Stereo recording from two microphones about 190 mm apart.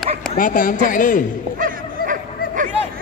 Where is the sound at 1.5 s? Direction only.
45° right (ahead or behind).